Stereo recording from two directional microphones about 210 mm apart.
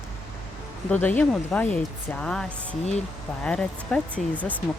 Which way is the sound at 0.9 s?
10° left (ahead or behind).